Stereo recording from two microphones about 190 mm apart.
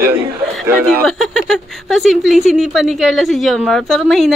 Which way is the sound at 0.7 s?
10° right (ahead or behind).